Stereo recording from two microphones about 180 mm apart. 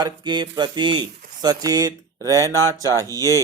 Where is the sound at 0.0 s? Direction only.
25° right (ahead or behind).